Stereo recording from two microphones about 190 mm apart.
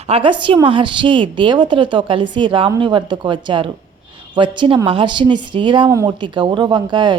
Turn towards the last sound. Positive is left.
turn(degrees=-25)  # may be behind; listen again after turning